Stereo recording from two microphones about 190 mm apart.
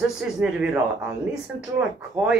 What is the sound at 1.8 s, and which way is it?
Speech, 5° right (ahead or behind).